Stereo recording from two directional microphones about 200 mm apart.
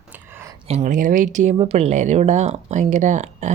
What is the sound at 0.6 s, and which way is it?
Speech, 35° right (ahead or behind).